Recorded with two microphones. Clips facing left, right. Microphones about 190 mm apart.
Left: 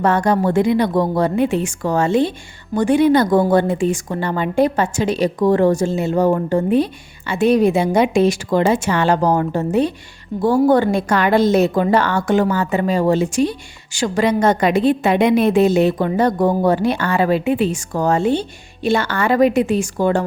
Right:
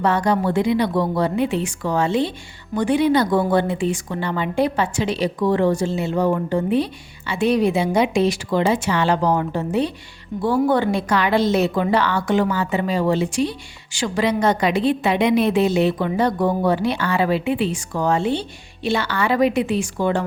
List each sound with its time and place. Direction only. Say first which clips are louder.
0.0 s a woman's voice: left 3 dB; 50° left (ahead or behind)